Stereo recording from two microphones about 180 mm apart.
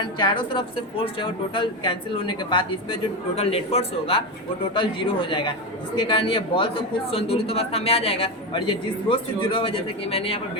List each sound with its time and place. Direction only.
0.2 s a woman's voice: 25° left (ahead or behind)